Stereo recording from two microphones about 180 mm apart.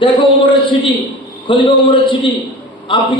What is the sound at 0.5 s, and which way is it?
A man's voice, 25° left (ahead or behind).